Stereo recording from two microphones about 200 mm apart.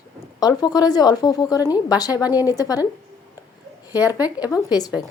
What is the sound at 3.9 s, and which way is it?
Speech, 5° right (ahead or behind).